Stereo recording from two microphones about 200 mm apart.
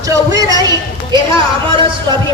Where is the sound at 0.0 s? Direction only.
15° right (ahead or behind).